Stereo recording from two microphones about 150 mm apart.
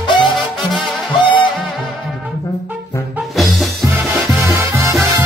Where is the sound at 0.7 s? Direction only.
Centre (ahead or behind).